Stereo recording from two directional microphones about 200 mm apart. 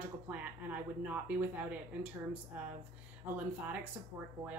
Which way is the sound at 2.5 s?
5° right (ahead or behind).